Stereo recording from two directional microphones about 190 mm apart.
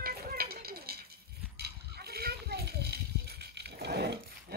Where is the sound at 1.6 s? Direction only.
55° right (ahead or behind).